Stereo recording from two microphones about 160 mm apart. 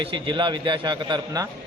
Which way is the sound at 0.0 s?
30° right (ahead or behind).